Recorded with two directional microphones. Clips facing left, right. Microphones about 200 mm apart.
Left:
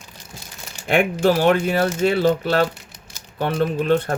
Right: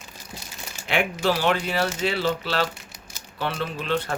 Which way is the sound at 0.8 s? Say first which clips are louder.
Left 6 dB; 50° left (ahead or behind).